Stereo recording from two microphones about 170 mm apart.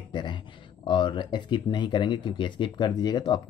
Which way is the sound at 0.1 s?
25° left (ahead or behind).